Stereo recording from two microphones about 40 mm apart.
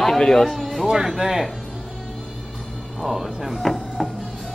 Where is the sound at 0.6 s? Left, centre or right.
Centre.